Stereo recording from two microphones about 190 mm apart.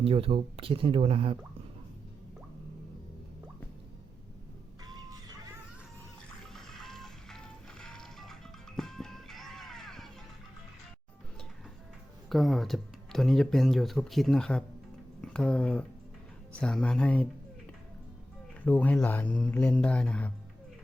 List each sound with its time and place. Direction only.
0.0 s speech: 30° right (ahead or behind)
4.9 s music: 20° right (ahead or behind)
6.5 s music: centre (ahead or behind)
12.3 s speech: centre (ahead or behind)
18.6 s speech: 10° left (ahead or behind)